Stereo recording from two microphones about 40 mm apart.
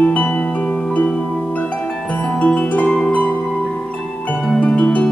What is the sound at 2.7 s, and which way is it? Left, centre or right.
Harp, left.